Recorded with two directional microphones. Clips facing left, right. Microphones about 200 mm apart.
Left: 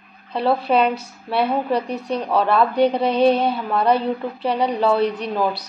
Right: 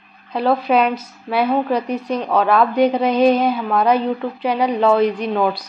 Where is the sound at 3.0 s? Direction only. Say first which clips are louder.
Right 2 dB; 30° left (ahead or behind).